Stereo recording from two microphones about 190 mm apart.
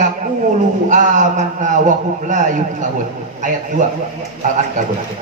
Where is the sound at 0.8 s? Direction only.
40° right (ahead or behind).